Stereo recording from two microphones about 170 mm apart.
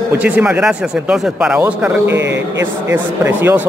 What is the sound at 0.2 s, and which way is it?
Speech, 10° right (ahead or behind).